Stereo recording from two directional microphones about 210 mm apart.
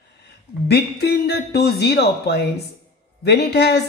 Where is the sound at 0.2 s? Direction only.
50° left (ahead or behind).